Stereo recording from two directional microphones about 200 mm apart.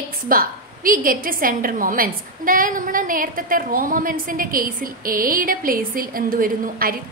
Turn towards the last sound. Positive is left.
turn(degrees=-45)  # may be behind; listen again after turning